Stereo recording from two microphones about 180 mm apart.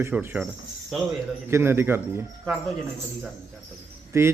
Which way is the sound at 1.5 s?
15° right (ahead or behind).